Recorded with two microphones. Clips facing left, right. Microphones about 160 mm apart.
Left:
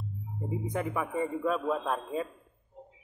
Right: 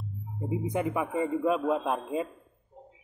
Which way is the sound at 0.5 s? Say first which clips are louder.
Right 4 dB; 20° right (ahead or behind).